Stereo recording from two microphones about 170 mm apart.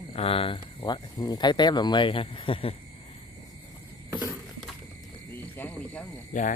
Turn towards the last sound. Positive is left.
turn(degrees=50)  # may be behind; listen again after turning